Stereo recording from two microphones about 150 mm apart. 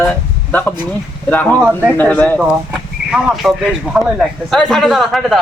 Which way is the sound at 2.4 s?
5° right (ahead or behind).